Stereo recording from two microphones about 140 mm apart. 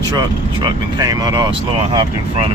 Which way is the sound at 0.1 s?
35° right (ahead or behind).